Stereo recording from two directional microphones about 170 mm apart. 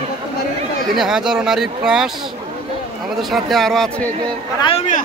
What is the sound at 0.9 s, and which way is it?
Speech, 5° right (ahead or behind).